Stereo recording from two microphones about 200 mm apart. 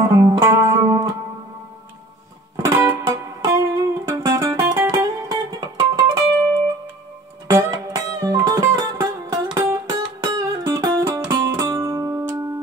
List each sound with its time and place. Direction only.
0.0 s music: 15° right (ahead or behind)
2.5 s music: 15° right (ahead or behind)
7.4 s music: 15° right (ahead or behind)